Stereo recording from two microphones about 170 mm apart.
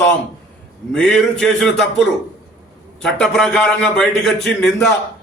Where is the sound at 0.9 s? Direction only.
5° left (ahead or behind).